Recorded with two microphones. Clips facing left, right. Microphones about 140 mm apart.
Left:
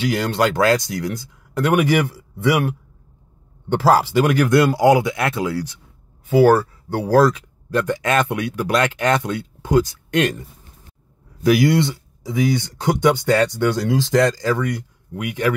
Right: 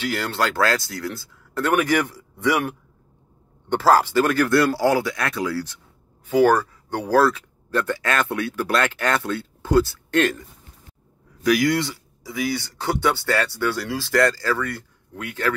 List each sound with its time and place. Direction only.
0.0 s speech: 15° left (ahead or behind)
6.3 s speech: 10° left (ahead or behind)
11.4 s speech: 25° left (ahead or behind)